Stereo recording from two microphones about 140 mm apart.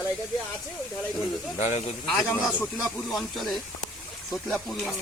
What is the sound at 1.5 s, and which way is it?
Speech, 55° left (ahead or behind).